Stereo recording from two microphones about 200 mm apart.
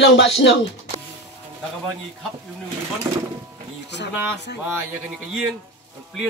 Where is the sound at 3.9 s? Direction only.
60° left (ahead or behind).